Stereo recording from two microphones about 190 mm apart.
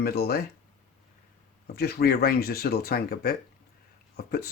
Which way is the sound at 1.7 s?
55° left (ahead or behind).